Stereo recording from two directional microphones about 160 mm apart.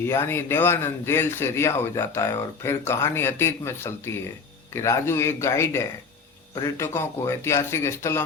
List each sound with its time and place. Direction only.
0.0 s a man's voice: 15° left (ahead or behind)